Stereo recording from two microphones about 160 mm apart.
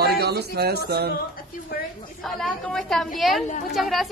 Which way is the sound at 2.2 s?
Centre (ahead or behind).